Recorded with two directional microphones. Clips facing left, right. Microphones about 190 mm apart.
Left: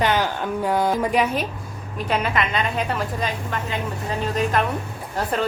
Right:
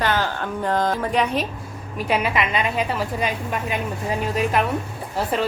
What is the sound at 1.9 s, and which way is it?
A woman's voice, 5° right (ahead or behind).